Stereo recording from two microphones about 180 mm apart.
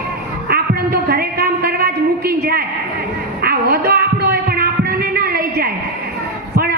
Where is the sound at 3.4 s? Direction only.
60° right (ahead or behind).